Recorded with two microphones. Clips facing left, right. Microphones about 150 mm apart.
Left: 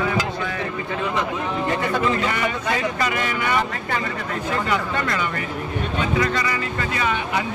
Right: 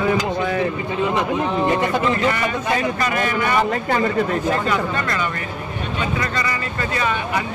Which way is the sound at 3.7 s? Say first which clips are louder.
Right 7 dB; 35° right (ahead or behind).